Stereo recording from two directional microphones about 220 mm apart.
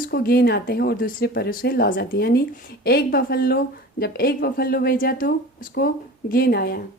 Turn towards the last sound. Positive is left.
turn(degrees=45)  # may be behind; listen again after turning